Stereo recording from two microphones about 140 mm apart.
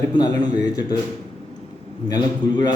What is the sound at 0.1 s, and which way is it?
Speech, 30° left (ahead or behind).